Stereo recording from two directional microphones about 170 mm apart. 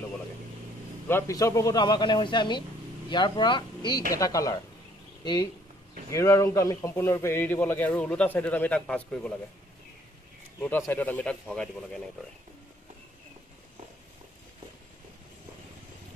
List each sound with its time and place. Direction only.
1.0 s a man's voice: 15° left (ahead or behind)
10.9 s a man's voice: 10° left (ahead or behind)